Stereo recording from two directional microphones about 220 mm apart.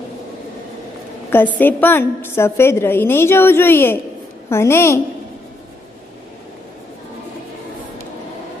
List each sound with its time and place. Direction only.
1.3 s a woman's voice: 10° left (ahead or behind)